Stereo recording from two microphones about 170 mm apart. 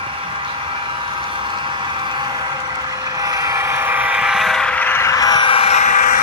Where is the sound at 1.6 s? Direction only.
25° right (ahead or behind).